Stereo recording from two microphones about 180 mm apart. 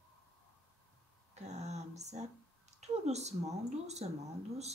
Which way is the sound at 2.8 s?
40° right (ahead or behind).